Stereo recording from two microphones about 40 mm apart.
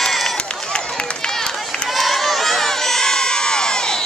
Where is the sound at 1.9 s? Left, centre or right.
Centre.